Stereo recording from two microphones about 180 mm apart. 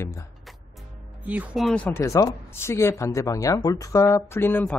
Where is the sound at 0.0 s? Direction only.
15° left (ahead or behind).